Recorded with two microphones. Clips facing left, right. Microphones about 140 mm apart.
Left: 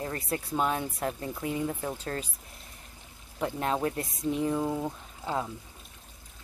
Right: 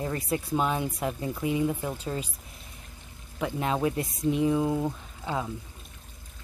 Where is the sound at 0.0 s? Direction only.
20° right (ahead or behind).